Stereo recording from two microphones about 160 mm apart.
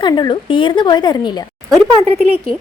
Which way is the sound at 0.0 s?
25° left (ahead or behind).